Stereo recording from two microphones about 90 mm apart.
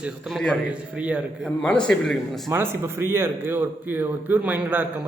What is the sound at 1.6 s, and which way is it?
Speech, 10° left (ahead or behind).